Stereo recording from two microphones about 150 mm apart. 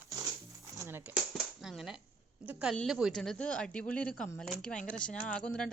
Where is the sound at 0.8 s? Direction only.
15° right (ahead or behind).